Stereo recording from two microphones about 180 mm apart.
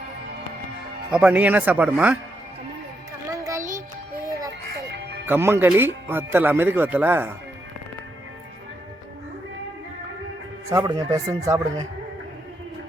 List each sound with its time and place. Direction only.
1.1 s speech: 5° right (ahead or behind)
3.6 s music: 45° right (ahead or behind)
4.2 s music: 20° right (ahead or behind)
5.2 s speech: 15° right (ahead or behind)
10.7 s a man's voice: 20° right (ahead or behind)